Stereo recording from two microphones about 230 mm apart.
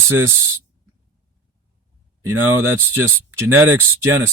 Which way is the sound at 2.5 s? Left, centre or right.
Right.